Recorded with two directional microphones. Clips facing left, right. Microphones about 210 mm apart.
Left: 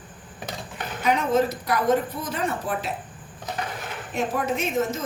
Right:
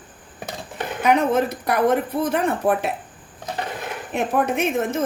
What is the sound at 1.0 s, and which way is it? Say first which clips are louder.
Speech: right 3 dB; 60° right (ahead or behind).